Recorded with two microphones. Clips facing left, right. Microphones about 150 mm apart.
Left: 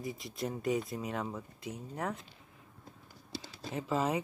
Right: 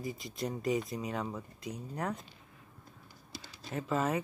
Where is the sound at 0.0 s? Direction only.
Centre (ahead or behind).